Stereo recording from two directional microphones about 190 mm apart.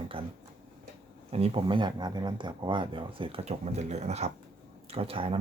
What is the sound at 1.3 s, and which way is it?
Speech, 30° right (ahead or behind).